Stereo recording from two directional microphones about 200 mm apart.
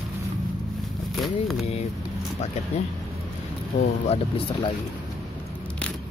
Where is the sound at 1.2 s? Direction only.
Centre (ahead or behind).